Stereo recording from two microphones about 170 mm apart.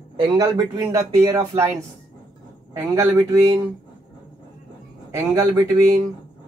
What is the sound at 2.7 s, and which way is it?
Speech, 15° right (ahead or behind).